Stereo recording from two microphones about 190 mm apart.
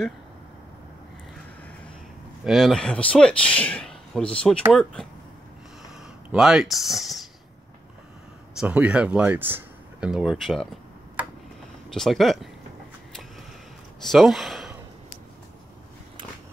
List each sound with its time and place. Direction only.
2.4 s speech: centre (ahead or behind)
6.3 s speech: centre (ahead or behind)
8.5 s speech: 5° right (ahead or behind)
11.9 s speech: centre (ahead or behind)
14.0 s speech: centre (ahead or behind)